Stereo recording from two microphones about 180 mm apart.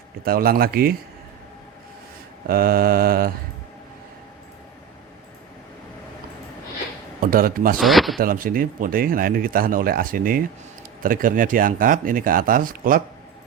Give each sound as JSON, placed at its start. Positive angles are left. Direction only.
{"t": 0.3, "sound": "mantra", "side_deg": -55}
{"t": 2.5, "sound": "mantra", "side_deg": -55}
{"t": 7.2, "sound": "speech", "side_deg": -55}
{"t": 7.8, "sound": "speech", "side_deg": 0}
{"t": 8.2, "sound": "speech", "side_deg": -50}